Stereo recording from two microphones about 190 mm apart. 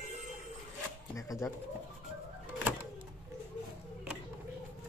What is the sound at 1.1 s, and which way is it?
Speech, 15° left (ahead or behind).